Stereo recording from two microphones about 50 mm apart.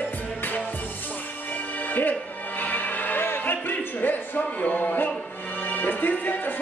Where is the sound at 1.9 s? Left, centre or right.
Left.